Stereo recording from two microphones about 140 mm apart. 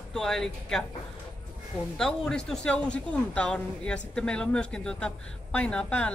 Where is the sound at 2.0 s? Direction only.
5° left (ahead or behind).